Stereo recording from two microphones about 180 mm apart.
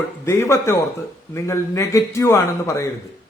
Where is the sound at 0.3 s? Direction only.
15° left (ahead or behind).